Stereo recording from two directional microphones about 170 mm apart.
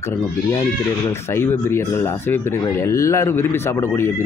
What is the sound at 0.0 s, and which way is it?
Speech, 20° left (ahead or behind).